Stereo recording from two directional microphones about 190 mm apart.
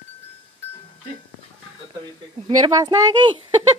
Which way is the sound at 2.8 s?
20° right (ahead or behind).